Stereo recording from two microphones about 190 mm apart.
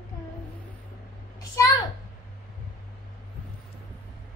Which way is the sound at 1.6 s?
15° left (ahead or behind).